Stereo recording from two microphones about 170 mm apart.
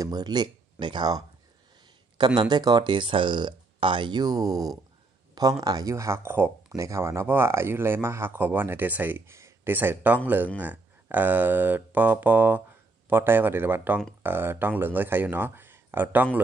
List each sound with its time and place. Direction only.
0.0 s speech: 25° right (ahead or behind)